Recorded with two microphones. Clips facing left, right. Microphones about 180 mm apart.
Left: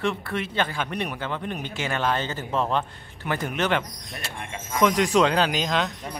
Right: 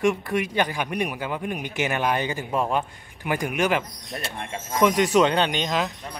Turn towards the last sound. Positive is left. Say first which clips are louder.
# even
turn(degrees=0)  # may be behind; listen again after turning